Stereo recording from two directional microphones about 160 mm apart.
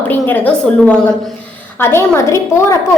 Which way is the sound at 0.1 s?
10° left (ahead or behind).